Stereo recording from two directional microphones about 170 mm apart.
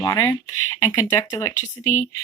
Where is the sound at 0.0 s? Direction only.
20° left (ahead or behind).